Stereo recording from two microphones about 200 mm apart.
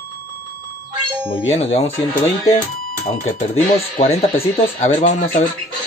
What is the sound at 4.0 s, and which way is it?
Speech, 30° left (ahead or behind).